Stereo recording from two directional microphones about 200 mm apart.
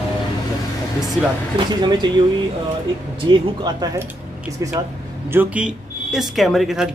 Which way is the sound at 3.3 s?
20° right (ahead or behind).